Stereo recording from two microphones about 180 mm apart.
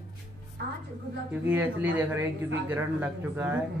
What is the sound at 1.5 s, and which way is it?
Speech, 10° right (ahead or behind).